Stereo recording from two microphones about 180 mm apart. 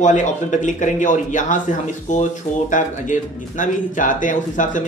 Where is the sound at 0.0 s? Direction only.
40° left (ahead or behind).